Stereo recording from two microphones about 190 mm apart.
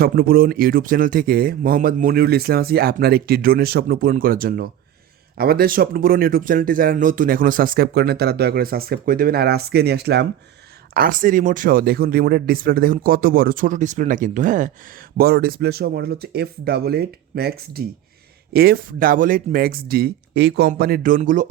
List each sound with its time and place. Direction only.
0.0 s speech: 50° right (ahead or behind)
10.9 s speech: 45° right (ahead or behind)